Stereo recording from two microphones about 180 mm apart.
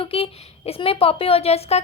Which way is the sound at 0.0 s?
30° left (ahead or behind).